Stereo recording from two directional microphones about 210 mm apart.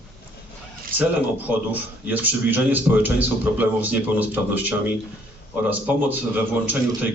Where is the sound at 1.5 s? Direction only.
10° right (ahead or behind).